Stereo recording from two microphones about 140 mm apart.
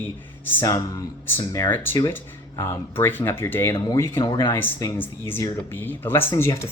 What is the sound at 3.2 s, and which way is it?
Speech, 15° left (ahead or behind).